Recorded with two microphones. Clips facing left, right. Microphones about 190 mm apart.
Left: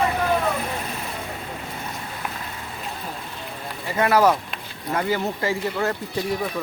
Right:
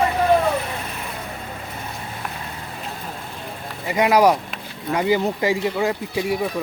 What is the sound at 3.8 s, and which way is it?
Speech, 15° right (ahead or behind).